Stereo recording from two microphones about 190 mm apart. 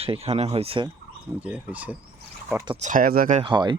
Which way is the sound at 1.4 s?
5° right (ahead or behind).